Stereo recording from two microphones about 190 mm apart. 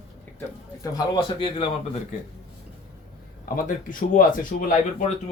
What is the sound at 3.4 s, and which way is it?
Speech, 45° left (ahead or behind).